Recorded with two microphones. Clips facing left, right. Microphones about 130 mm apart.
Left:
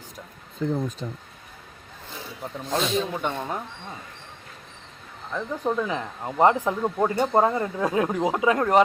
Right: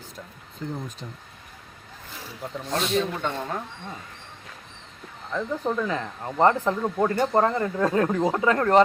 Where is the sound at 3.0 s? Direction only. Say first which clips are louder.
Even; 15° left (ahead or behind).